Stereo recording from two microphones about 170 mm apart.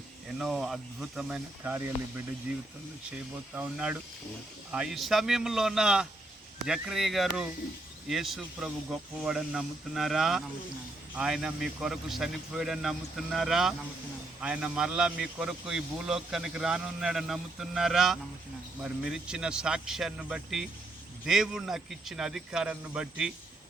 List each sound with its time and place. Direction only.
0.3 s a man's voice: centre (ahead or behind)
3.5 s a man's voice: 5° right (ahead or behind)